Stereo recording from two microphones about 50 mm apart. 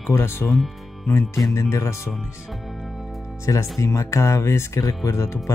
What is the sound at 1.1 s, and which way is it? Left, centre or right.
Speech, left.